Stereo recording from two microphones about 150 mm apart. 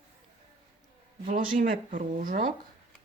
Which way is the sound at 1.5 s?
65° right (ahead or behind).